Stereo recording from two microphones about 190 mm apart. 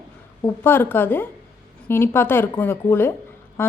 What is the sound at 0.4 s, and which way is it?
A woman's voice, 10° left (ahead or behind).